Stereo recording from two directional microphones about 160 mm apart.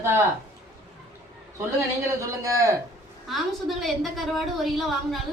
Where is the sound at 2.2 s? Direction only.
20° right (ahead or behind).